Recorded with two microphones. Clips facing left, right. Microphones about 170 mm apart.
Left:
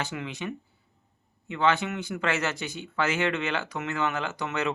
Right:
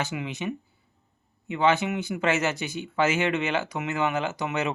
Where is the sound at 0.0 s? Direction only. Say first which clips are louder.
Right 3 dB; 20° right (ahead or behind).